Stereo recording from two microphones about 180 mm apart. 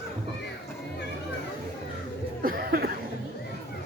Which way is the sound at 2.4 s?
55° right (ahead or behind).